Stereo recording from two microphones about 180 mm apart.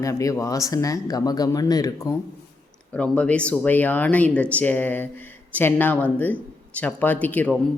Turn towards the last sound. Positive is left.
turn(degrees=10)  # may be behind; listen again after turning